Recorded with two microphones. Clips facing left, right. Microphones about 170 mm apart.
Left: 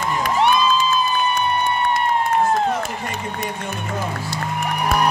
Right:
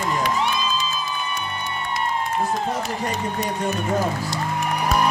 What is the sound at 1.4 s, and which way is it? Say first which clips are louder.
Music: left 9 dB; 90° right.